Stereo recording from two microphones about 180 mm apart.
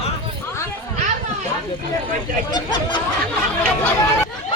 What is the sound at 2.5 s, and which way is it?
Speech, 25° left (ahead or behind).